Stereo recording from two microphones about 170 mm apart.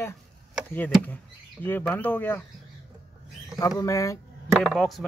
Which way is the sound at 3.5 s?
20° left (ahead or behind).